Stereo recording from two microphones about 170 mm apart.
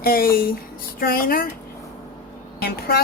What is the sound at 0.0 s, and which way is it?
A woman's voice, 60° left (ahead or behind).